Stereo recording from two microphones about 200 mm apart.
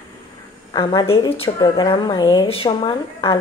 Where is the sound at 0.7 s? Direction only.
25° left (ahead or behind).